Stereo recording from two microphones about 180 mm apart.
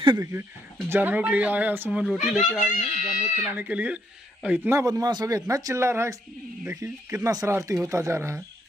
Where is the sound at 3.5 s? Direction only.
10° right (ahead or behind).